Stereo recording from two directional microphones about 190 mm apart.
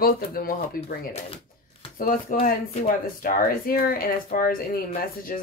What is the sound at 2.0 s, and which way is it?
Speech, 45° left (ahead or behind).